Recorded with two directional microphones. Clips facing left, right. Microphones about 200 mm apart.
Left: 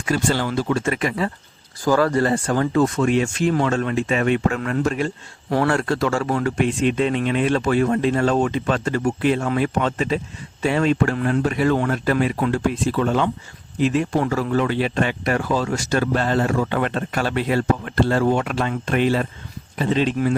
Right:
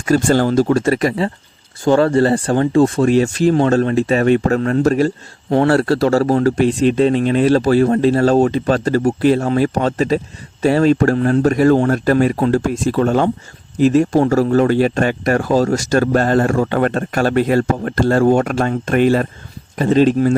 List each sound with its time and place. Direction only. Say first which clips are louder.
0.0 s speech: right 8 dB; 45° right (ahead or behind)